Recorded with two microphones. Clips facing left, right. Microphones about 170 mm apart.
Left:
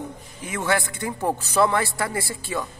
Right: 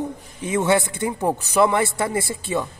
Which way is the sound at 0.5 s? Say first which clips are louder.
Right 5 dB; 25° right (ahead or behind).